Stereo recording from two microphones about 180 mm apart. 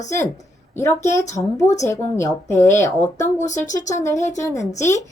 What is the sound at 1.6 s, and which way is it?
Speech, 40° left (ahead or behind).